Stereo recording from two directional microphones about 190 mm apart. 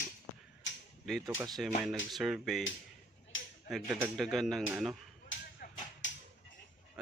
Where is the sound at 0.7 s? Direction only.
75° left (ahead or behind).